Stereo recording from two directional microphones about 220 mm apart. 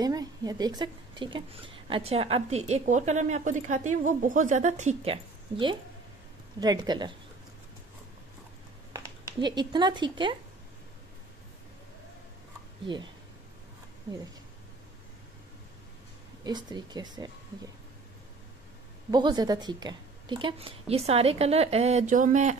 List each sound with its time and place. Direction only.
0.0 s a woman's voice: 15° right (ahead or behind)
8.9 s speech: 20° right (ahead or behind)
12.8 s a woman's voice: 20° right (ahead or behind)
16.4 s a woman's voice: 20° right (ahead or behind)
19.0 s a woman's voice: 20° right (ahead or behind)